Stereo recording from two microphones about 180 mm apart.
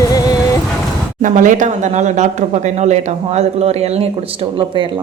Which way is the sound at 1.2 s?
45° right (ahead or behind).